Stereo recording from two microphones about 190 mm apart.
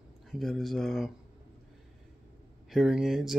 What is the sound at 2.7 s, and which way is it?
Speech, centre (ahead or behind).